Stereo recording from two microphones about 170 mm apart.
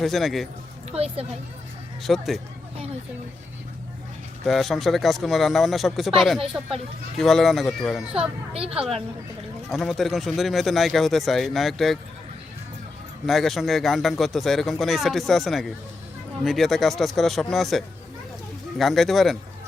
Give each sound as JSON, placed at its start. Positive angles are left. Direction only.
{"t": 0.0, "sound": "speech", "side_deg": 0}
{"t": 0.9, "sound": "a woman's voice", "side_deg": -35}
{"t": 2.0, "sound": "speech", "side_deg": 0}
{"t": 4.4, "sound": "speech", "side_deg": 0}
{"t": 8.5, "sound": "a woman's voice", "side_deg": -35}
{"t": 9.7, "sound": "speech", "side_deg": 0}
{"t": 13.2, "sound": "speech", "side_deg": 0}